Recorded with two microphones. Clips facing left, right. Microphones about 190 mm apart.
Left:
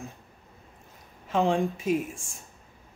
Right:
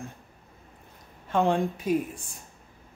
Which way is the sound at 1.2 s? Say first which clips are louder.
Even; centre (ahead or behind).